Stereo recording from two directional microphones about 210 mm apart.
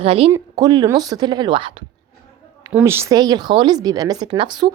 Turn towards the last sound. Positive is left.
turn(degrees=-20)  # may be behind; listen again after turning